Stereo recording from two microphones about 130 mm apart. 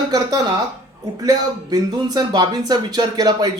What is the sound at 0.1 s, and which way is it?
A man's voice, 30° right (ahead or behind).